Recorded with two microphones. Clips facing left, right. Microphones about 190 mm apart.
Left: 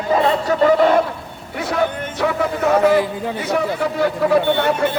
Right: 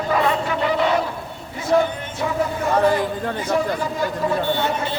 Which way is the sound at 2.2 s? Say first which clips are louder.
Left 4 dB; 80° left.